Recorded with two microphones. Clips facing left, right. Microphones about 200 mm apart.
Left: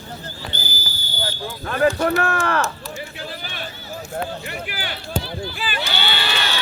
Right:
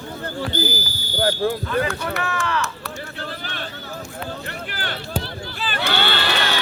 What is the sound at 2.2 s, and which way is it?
Speech, 50° left (ahead or behind).